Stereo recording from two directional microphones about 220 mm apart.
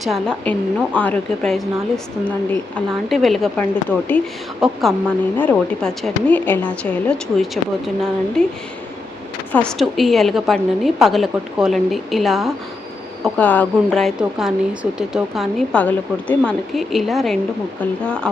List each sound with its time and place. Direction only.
0.0 s speech: centre (ahead or behind)